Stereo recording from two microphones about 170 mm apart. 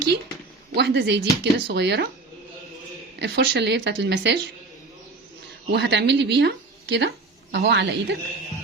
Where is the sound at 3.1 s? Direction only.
90° right.